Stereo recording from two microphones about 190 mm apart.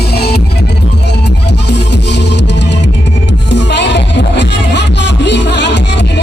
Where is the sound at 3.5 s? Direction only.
65° left (ahead or behind).